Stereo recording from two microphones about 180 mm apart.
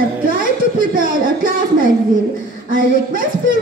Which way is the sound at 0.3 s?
50° right (ahead or behind).